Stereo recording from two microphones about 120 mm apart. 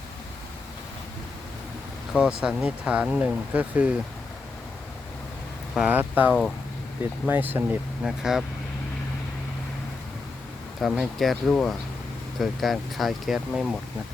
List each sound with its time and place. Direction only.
2.1 s speech: 5° right (ahead or behind)
5.7 s speech: 5° right (ahead or behind)
8.0 s speech: 5° right (ahead or behind)
10.8 s speech: centre (ahead or behind)